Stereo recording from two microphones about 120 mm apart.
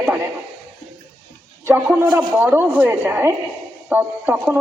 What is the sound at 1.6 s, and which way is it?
A man's voice, 15° right (ahead or behind).